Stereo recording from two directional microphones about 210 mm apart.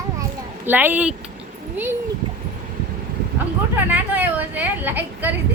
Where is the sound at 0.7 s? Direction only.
10° right (ahead or behind).